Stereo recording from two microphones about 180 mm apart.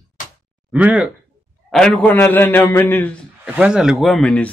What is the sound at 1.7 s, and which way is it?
A man's voice, 5° left (ahead or behind).